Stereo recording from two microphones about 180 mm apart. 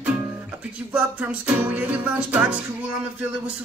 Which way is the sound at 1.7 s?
10° right (ahead or behind).